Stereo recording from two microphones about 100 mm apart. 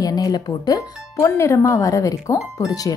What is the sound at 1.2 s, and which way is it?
Speech, 30° left (ahead or behind).